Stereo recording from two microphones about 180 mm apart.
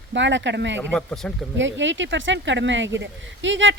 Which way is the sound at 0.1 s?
85° right.